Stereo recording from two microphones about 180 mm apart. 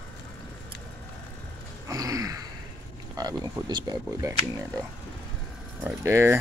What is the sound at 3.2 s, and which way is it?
Speech, 20° right (ahead or behind).